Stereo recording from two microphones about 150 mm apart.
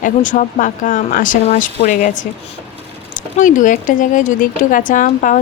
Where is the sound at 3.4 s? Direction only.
60° left (ahead or behind).